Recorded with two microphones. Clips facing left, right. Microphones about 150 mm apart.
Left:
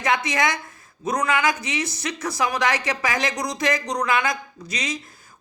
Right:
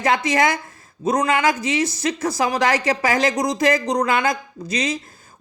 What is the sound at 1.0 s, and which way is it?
A woman's voice, 25° right (ahead or behind).